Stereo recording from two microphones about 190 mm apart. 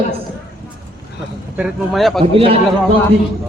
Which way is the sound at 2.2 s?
30° right (ahead or behind).